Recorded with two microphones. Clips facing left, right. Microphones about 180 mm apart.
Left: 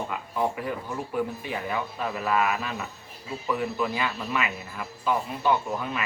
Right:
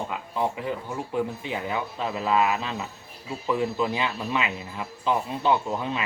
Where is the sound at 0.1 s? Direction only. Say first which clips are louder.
Even; 20° right (ahead or behind).